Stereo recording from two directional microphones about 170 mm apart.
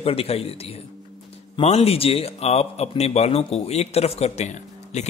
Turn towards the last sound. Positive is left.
turn(degrees=40)  # may be behind; listen again after turning